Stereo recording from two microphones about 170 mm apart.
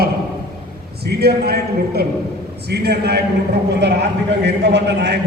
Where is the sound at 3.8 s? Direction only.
85° right.